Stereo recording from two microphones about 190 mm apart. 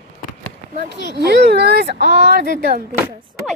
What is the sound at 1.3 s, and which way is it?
Speech, 55° right (ahead or behind).